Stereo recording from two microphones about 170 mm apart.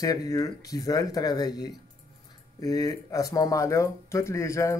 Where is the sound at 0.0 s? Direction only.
20° left (ahead or behind).